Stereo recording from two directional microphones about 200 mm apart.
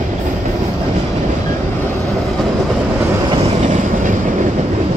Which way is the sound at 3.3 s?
35° right (ahead or behind).